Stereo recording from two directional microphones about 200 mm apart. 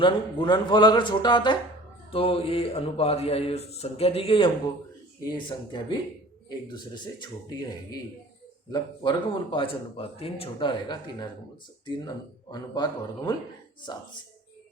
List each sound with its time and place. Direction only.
0.0 s speech: 25° left (ahead or behind)
8.7 s speech: 25° left (ahead or behind)